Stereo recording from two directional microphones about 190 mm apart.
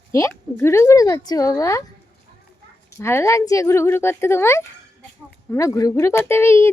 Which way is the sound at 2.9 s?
15° left (ahead or behind).